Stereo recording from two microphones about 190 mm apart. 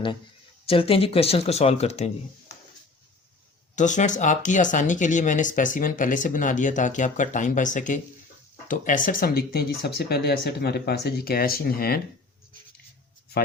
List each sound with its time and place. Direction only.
0.6 s speech: 30° left (ahead or behind)
3.8 s speech: 40° left (ahead or behind)